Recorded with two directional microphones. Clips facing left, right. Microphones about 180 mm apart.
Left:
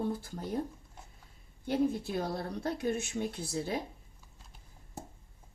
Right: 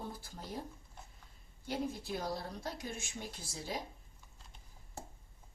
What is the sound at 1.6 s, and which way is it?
Speech, 60° left (ahead or behind).